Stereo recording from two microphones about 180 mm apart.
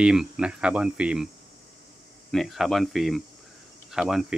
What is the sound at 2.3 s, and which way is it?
A man's voice, centre (ahead or behind).